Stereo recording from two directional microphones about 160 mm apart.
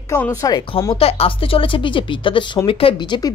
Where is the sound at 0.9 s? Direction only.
35° left (ahead or behind).